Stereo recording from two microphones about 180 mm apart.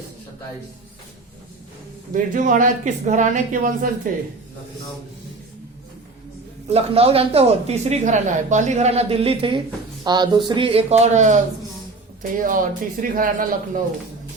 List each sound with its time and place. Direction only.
2.1 s speech: 45° right (ahead or behind)
6.7 s speech: 35° right (ahead or behind); by 13.8 s 50° right (ahead or behind)